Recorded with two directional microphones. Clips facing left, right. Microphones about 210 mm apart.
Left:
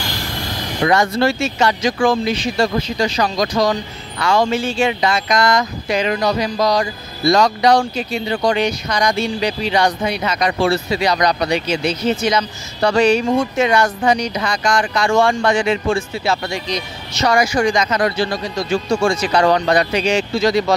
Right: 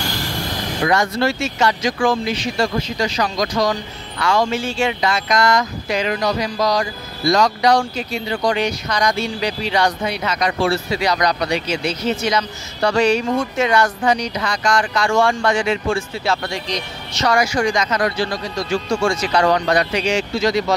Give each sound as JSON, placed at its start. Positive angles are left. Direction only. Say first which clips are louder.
{"t": 0.8, "sound": "speech", "louder": "left 3 dB", "side_deg": 30}
{"t": 4.7, "sound": "speech", "louder": "left 2 dB", "side_deg": 20}
{"t": 17.4, "sound": "speech", "louder": "left 2 dB", "side_deg": 25}